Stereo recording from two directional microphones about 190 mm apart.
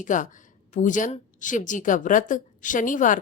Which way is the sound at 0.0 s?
45° left (ahead or behind).